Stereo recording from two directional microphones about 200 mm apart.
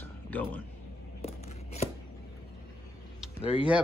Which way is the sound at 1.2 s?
30° left (ahead or behind).